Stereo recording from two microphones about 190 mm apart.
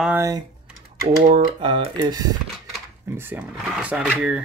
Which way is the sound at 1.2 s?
45° right (ahead or behind).